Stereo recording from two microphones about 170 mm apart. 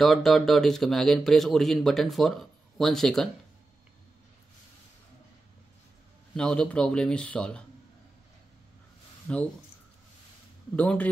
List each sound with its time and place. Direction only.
0.0 s a man's voice: centre (ahead or behind)
6.3 s a man's voice: 5° left (ahead or behind)
9.3 s a man's voice: 5° left (ahead or behind)
10.8 s a man's voice: 10° left (ahead or behind)